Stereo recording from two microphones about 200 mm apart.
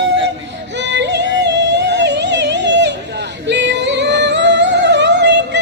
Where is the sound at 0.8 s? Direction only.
60° right (ahead or behind).